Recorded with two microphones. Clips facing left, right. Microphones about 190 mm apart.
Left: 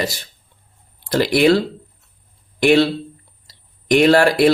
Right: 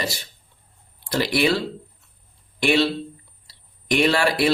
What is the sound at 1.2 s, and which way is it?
Speech, 50° left (ahead or behind).